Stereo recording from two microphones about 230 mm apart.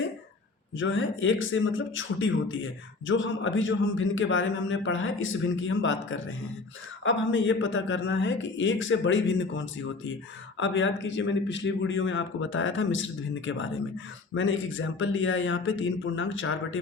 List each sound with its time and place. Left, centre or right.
0.8 s speech: left